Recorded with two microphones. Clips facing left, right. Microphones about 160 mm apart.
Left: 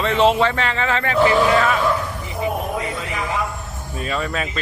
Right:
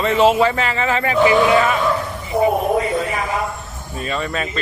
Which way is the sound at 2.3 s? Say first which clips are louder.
Right 8 dB; 75° right (ahead or behind).